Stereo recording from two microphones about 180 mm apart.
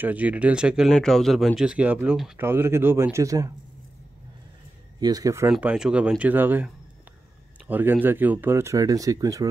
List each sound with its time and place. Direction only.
0.0 s speech: 10° right (ahead or behind)
5.0 s speech: 20° right (ahead or behind)
5.5 s speech: 5° right (ahead or behind)